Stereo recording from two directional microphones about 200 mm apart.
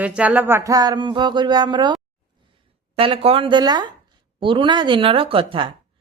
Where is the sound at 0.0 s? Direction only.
5° right (ahead or behind).